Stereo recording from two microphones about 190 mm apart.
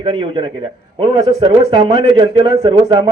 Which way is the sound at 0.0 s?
30° right (ahead or behind).